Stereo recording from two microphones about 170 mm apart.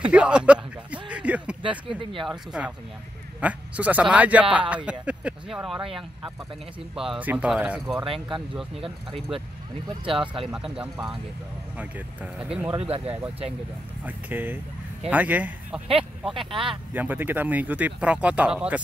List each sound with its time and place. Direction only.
0.1 s speech: 5° right (ahead or behind)
1.1 s a sound: 10° right (ahead or behind)
1.6 s speech: 30° right (ahead or behind)
2.2 s speech: 5° right (ahead or behind)
10.2 s speech: 30° right (ahead or behind)
10.5 s speech: 5° right (ahead or behind)
12.7 s speech: 35° right (ahead or behind)
14.0 s speech: 10° right (ahead or behind)
15.9 s speech: 30° right (ahead or behind)
16.9 s speech: 10° right (ahead or behind)